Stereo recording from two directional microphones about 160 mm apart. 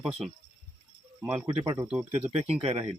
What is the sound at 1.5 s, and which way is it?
Speech, 25° right (ahead or behind).